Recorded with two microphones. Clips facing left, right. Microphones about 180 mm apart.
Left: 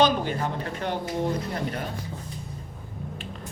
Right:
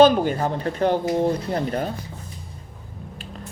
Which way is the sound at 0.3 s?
35° right (ahead or behind).